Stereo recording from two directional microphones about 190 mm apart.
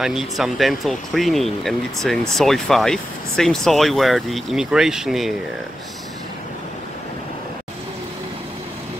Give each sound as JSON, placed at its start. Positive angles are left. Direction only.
{"t": 0.0, "sound": "speech", "side_deg": 0}